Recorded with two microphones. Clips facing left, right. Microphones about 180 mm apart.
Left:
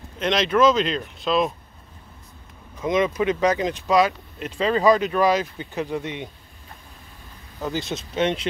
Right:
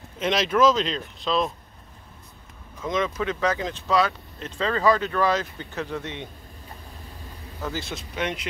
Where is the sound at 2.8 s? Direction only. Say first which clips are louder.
Left 5 dB; 15° left (ahead or behind).